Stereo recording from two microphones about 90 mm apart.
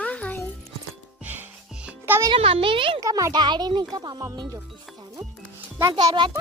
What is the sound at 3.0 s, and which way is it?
Speech, 40° right (ahead or behind).